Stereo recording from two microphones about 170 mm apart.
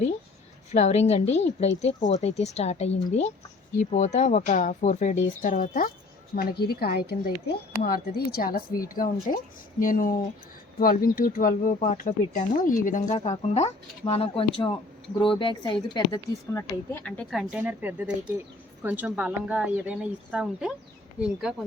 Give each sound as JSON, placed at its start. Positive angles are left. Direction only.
{"t": 0.7, "sound": "speech", "side_deg": 40}
{"t": 6.3, "sound": "speech", "side_deg": 65}
{"t": 9.3, "sound": "speech", "side_deg": 40}
{"t": 9.8, "sound": "speech", "side_deg": 50}
{"t": 16.5, "sound": "speech", "side_deg": 15}